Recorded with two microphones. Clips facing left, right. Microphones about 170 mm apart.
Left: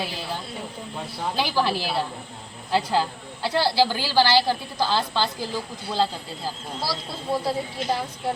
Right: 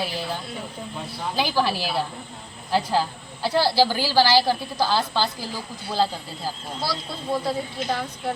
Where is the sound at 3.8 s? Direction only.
10° right (ahead or behind).